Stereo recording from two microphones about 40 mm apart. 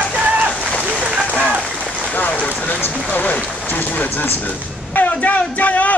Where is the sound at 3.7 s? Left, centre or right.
Left.